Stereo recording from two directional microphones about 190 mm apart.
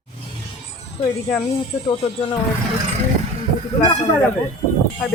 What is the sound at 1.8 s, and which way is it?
Speech, 25° left (ahead or behind).